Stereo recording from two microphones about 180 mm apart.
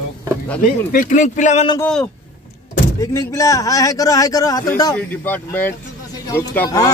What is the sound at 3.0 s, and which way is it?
A man's voice, 20° left (ahead or behind).